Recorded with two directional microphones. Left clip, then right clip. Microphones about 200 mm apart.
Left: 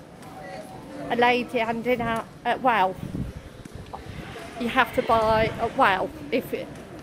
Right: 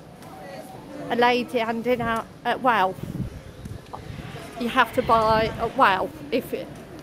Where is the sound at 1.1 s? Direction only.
20° right (ahead or behind).